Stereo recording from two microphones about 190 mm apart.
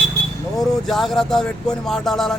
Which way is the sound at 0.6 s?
Centre (ahead or behind).